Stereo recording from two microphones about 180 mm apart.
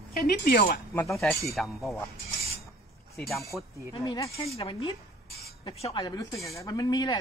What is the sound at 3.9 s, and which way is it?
Speech, 25° left (ahead or behind).